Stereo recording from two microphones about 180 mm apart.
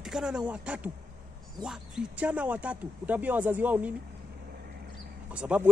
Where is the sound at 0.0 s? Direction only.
5° right (ahead or behind).